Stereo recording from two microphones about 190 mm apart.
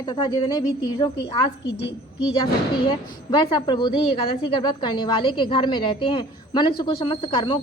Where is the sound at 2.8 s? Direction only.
25° left (ahead or behind).